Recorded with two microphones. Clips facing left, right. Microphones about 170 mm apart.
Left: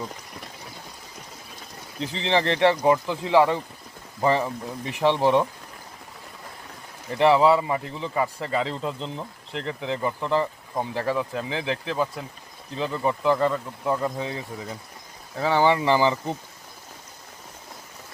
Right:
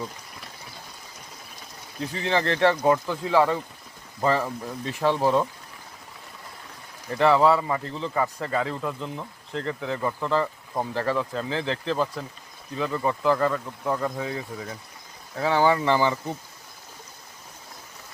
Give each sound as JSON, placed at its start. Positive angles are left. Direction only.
{"t": 2.0, "sound": "a man's voice", "side_deg": 20}
{"t": 7.2, "sound": "a man's voice", "side_deg": 15}
{"t": 13.5, "sound": "speech", "side_deg": 5}
{"t": 14.0, "sound": "a man's voice", "side_deg": 20}